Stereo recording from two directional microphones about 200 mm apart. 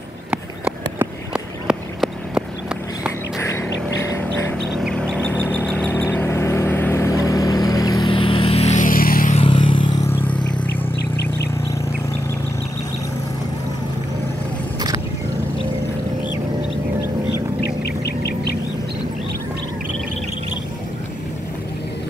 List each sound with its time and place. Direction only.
0.3 s a sound: 5° right (ahead or behind)
3.3 s bird: 15° left (ahead or behind)
4.8 s vehicle: 5° left (ahead or behind); by 9.3 s 45° left (ahead or behind)
9.3 s vehicle: 25° left (ahead or behind)
18.0 s bird: 55° left (ahead or behind)